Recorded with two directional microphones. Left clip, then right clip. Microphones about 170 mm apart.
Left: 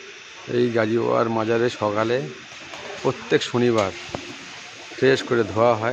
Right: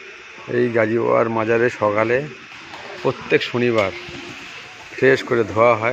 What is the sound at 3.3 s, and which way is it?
Speech, 10° left (ahead or behind).